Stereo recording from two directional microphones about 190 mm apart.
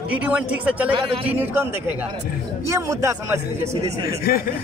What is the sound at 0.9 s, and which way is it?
Speech, 30° right (ahead or behind).